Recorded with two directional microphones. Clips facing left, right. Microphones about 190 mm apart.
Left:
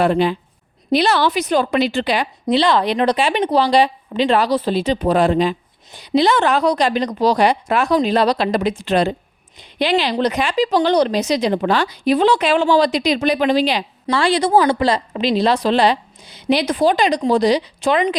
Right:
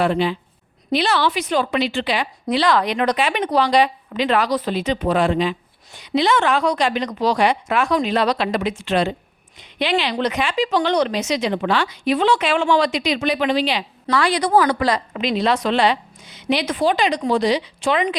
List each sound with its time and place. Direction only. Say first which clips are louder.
0.0 s speech: left 3 dB; 45° left (ahead or behind)
2.5 s speech: left 3 dB; 25° left (ahead or behind); by 13.8 s 40° left (ahead or behind)
14.1 s speech: left 2 dB; 30° left (ahead or behind)